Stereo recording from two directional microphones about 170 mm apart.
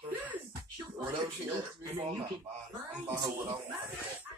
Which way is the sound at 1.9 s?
30° right (ahead or behind).